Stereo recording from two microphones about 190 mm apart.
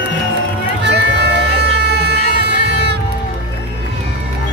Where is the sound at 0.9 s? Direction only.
60° right (ahead or behind).